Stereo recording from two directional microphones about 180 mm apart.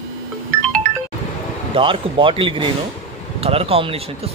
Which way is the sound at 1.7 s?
30° right (ahead or behind).